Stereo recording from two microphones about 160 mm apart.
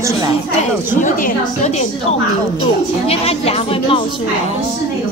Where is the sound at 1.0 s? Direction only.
55° left (ahead or behind).